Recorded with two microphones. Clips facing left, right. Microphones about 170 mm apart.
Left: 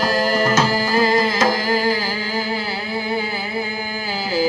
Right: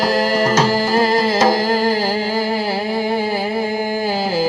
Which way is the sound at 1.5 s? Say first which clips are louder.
Right 3 dB; 80° right.